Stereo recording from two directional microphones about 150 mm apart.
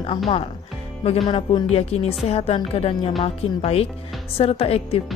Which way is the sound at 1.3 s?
35° left (ahead or behind).